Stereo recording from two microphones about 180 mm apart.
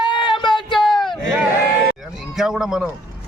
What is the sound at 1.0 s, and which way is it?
Speech, centre (ahead or behind).